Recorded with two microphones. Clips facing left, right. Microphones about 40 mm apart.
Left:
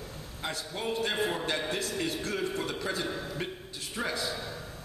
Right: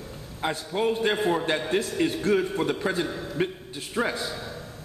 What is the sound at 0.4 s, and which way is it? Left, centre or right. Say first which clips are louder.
Speech: right 9 dB; right.